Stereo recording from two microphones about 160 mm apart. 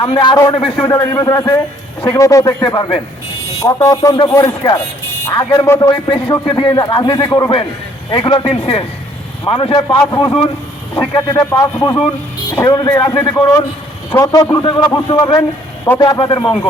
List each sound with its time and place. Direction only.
0.0 s a man's voice: 30° left (ahead or behind)
6.6 s a man's voice: 30° left (ahead or behind)